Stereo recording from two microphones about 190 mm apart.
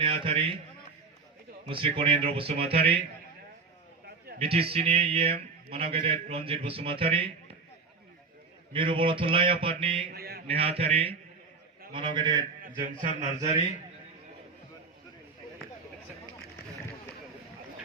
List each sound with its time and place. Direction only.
0.0 s mantra: 30° right (ahead or behind)
1.6 s mantra: 25° right (ahead or behind)
4.4 s a man's voice: 30° right (ahead or behind)
8.7 s mantra: 25° right (ahead or behind)
10.1 s a sound: 55° right (ahead or behind)
10.4 s a man's voice: 30° right (ahead or behind)
11.9 s mantra: 25° right (ahead or behind)
13.0 s a man's voice: 40° right (ahead or behind)